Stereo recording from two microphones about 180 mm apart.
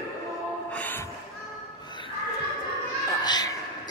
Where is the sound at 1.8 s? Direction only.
25° left (ahead or behind).